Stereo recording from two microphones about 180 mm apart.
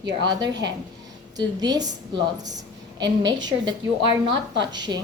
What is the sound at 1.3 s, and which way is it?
A woman's voice, 20° right (ahead or behind).